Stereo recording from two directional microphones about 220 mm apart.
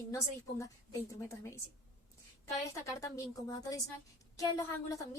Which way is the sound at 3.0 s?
15° left (ahead or behind).